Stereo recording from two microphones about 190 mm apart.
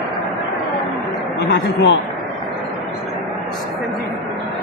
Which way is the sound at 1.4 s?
65° left (ahead or behind).